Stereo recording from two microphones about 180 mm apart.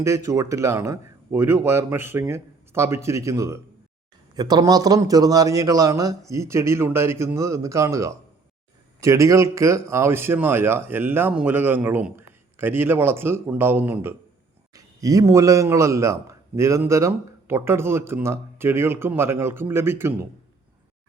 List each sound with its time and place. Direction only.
0.0 s a man's voice: 15° right (ahead or behind)